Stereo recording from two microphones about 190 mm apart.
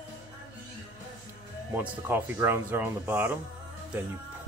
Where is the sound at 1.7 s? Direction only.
10° right (ahead or behind).